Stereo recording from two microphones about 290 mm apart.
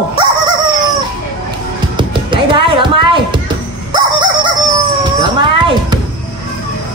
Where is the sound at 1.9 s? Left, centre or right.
Centre.